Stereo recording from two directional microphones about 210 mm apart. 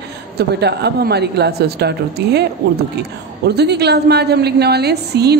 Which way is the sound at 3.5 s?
50° right (ahead or behind).